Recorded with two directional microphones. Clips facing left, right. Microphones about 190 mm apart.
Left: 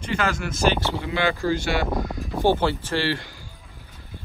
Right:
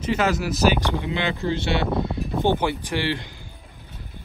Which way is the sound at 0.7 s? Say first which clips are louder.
Even; 15° right (ahead or behind).